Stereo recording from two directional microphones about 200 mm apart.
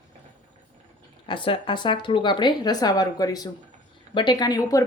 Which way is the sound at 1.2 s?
25° left (ahead or behind).